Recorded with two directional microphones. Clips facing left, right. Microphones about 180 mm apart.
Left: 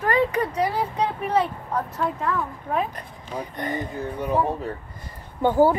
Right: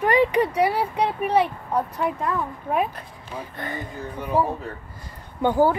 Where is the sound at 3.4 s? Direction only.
20° left (ahead or behind).